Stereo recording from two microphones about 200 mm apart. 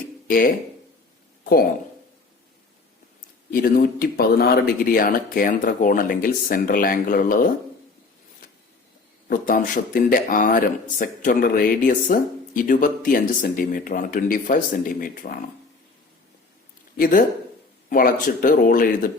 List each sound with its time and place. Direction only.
0.3 s speech: 45° left (ahead or behind)
3.5 s speech: 45° left (ahead or behind)
9.3 s speech: 45° left (ahead or behind)
17.0 s speech: 45° left (ahead or behind)